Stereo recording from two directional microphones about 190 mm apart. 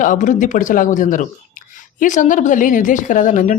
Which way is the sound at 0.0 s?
40° left (ahead or behind).